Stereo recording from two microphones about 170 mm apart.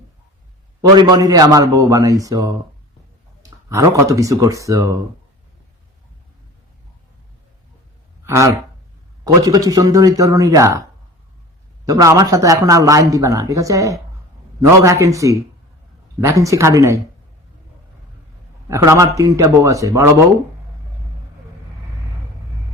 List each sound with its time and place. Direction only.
0.8 s speech: 25° right (ahead or behind)
3.7 s speech: 15° right (ahead or behind)
8.3 s speech: 15° right (ahead or behind)
11.9 s speech: 20° right (ahead or behind)
18.7 s speech: 15° right (ahead or behind)